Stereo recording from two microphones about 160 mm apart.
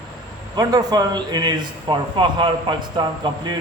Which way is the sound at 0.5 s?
25° right (ahead or behind).